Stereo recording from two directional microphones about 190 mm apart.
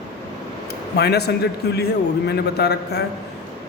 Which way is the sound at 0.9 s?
60° left (ahead or behind).